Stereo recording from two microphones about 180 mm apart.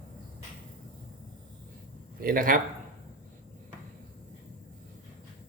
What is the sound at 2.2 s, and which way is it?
Speech, 50° right (ahead or behind).